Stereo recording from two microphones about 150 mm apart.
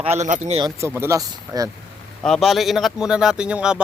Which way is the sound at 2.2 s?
Centre (ahead or behind).